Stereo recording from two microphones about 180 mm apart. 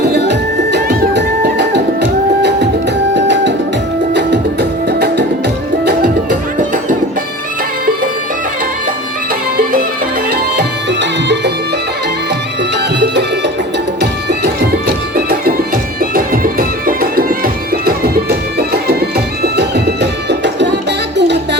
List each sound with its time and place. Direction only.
0.0 s music: 70° right (ahead or behind)
10.3 s music: 70° right (ahead or behind)
12.7 s music: 70° right (ahead or behind)